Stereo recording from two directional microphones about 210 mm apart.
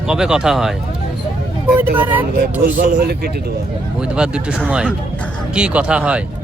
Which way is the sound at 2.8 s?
50° right (ahead or behind).